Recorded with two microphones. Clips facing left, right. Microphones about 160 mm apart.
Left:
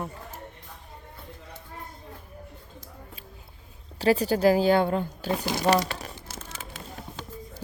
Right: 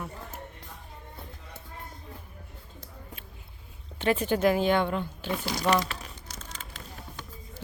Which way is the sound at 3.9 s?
35° left (ahead or behind).